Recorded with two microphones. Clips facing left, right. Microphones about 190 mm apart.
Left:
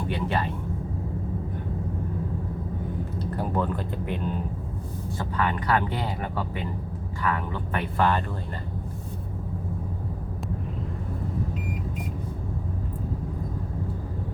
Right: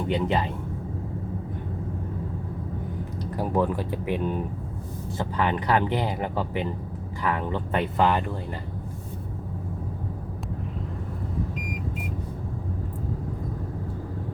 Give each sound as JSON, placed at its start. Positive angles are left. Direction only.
{"t": 0.1, "sound": "speech", "side_deg": -15}
{"t": 3.3, "sound": "speech", "side_deg": -10}
{"t": 5.1, "sound": "speech", "side_deg": -20}